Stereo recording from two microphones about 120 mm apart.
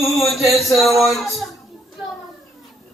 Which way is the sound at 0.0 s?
Centre (ahead or behind).